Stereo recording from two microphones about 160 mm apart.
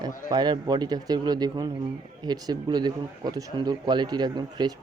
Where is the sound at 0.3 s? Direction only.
25° right (ahead or behind).